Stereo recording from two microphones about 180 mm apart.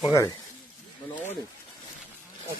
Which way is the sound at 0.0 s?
20° left (ahead or behind).